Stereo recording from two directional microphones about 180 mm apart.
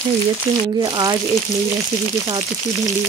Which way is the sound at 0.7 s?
25° right (ahead or behind).